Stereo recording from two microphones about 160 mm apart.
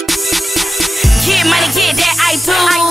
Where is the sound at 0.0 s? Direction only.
Centre (ahead or behind).